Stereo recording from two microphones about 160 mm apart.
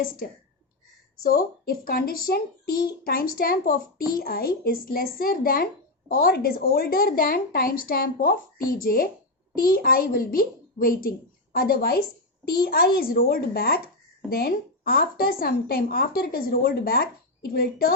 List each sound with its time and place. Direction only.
1.2 s a woman's voice: 70° left (ahead or behind)